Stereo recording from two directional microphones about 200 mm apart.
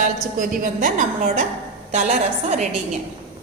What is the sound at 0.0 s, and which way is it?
A woman's voice, 40° right (ahead or behind).